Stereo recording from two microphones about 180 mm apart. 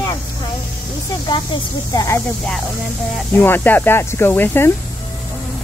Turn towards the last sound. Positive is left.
turn(degrees=10)  # may be behind; listen again after turning